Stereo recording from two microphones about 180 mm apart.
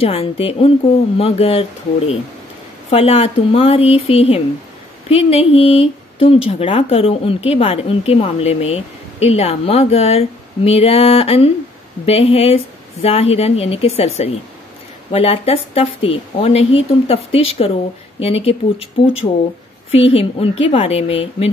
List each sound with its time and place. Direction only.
0.0 s speech: 30° left (ahead or behind)
19.9 s speech: 35° left (ahead or behind)